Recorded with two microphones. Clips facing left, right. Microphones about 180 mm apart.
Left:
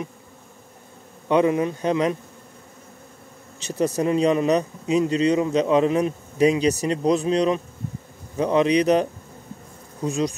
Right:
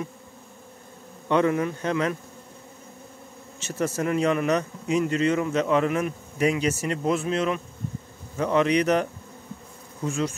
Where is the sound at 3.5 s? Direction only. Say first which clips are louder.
Left 4 dB; 15° left (ahead or behind).